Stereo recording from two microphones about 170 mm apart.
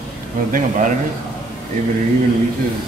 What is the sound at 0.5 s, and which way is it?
Speech, 50° right (ahead or behind).